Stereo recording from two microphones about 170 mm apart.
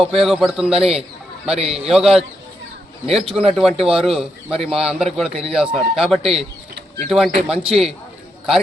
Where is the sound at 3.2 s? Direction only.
35° right (ahead or behind).